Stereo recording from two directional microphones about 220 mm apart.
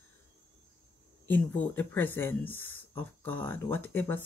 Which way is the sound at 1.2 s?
10° left (ahead or behind).